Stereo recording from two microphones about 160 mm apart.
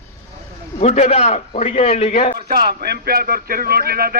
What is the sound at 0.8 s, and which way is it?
A man's voice, 40° left (ahead or behind).